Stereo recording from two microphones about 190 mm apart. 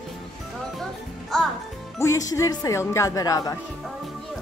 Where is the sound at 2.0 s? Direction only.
15° left (ahead or behind).